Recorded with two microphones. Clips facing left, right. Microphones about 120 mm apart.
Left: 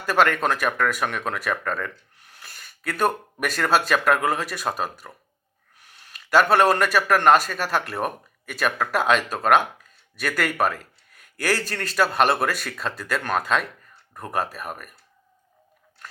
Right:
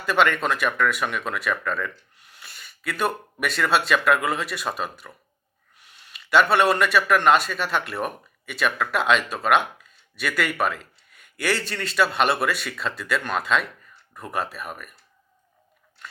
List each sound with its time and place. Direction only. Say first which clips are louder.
0.0 s a man's voice: left 1 dB; 40° left (ahead or behind)